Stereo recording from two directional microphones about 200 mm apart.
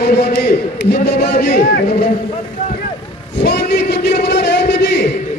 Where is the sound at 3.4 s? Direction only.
55° left (ahead or behind).